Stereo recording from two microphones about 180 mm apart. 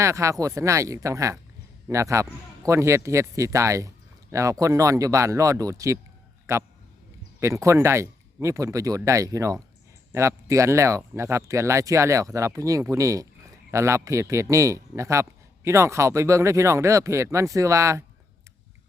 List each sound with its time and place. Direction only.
0.0 s a man's voice: 15° right (ahead or behind)